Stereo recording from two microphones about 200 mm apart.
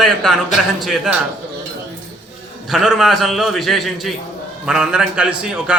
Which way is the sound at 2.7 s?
Centre (ahead or behind).